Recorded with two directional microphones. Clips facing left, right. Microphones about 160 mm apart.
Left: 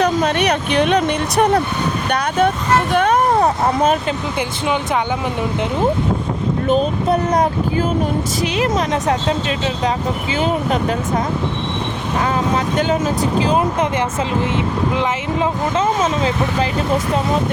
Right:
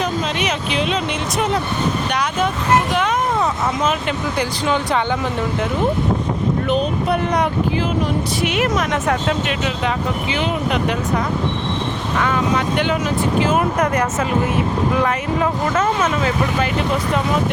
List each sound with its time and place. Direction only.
0.2 s speech: 55° left (ahead or behind)
6.7 s speech: 40° left (ahead or behind)
8.5 s speech: 30° left (ahead or behind)
10.3 s speech: 40° left (ahead or behind)
12.2 s speech: 35° left (ahead or behind)
13.5 s speech: 25° left (ahead or behind)